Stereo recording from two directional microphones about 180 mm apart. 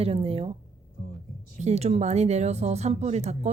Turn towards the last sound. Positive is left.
turn(degrees=-40)  # may be behind; listen again after turning